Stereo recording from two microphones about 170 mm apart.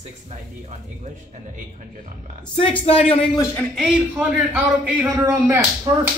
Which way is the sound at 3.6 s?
5° right (ahead or behind).